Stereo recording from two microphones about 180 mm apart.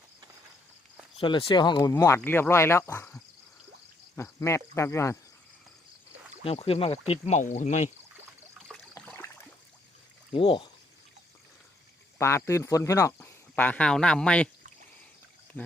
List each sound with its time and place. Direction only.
1.2 s speech: 30° left (ahead or behind)
6.4 s speech: 30° left (ahead or behind)
9.0 s a sound: 10° left (ahead or behind)
10.3 s speech: 30° left (ahead or behind)
12.2 s speech: 15° left (ahead or behind)
15.6 s speech: 10° left (ahead or behind)